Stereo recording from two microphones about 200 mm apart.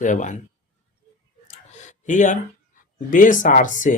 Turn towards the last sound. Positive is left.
turn(degrees=40)  # may be behind; listen again after turning